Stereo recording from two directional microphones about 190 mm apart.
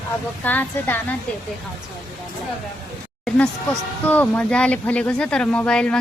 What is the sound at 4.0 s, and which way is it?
Speech, 5° left (ahead or behind).